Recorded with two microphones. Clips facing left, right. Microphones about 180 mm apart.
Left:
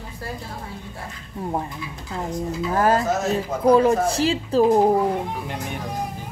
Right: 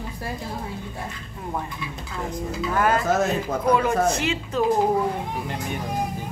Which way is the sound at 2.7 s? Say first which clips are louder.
Left 1 dB; 35° left (ahead or behind).